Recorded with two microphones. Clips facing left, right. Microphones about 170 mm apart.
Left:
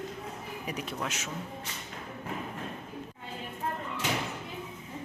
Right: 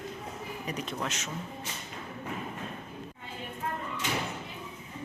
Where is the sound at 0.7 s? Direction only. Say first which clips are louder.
Even; 10° left (ahead or behind).